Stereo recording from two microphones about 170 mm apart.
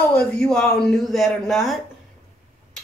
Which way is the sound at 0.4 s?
5° left (ahead or behind).